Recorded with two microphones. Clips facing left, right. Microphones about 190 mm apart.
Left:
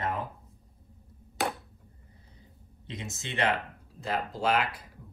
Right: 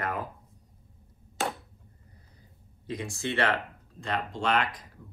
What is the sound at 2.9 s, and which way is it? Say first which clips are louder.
Speech: right 7 dB; 20° left (ahead or behind).